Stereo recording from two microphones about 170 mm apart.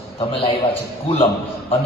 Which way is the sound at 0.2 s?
30° left (ahead or behind).